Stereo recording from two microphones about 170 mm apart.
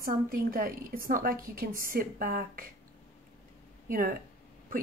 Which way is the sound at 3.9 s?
55° right (ahead or behind).